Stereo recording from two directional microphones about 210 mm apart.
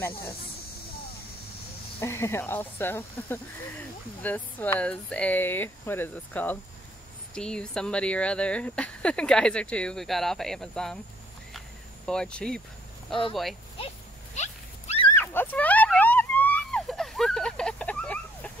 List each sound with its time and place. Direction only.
2.0 s speech: 10° left (ahead or behind)
12.1 s speech: 5° left (ahead or behind)
14.3 s dog: 30° left (ahead or behind)
15.1 s a sound: 10° left (ahead or behind)